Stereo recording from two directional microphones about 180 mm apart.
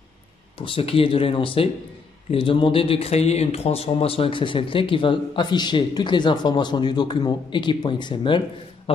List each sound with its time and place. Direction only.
0.6 s speech: 30° left (ahead or behind)